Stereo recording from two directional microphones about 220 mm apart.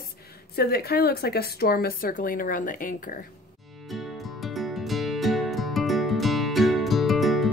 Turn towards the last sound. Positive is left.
turn(degrees=0)  # may be behind; listen again after turning